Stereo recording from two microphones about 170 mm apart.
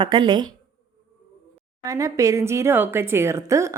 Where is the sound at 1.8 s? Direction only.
20° right (ahead or behind).